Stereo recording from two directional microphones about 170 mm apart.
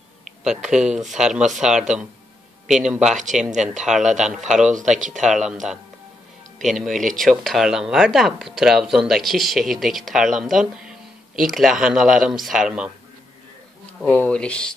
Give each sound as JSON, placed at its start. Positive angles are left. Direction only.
{"t": 0.4, "sound": "speech", "side_deg": -5}
{"t": 4.6, "sound": "speech", "side_deg": -45}
{"t": 5.2, "sound": "speech", "side_deg": -5}
{"t": 14.0, "sound": "speech", "side_deg": 10}